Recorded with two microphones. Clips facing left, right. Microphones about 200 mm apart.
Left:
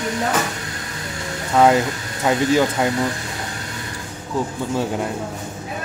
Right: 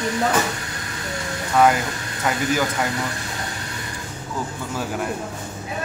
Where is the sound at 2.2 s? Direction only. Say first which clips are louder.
Left 5 dB; 25° left (ahead or behind).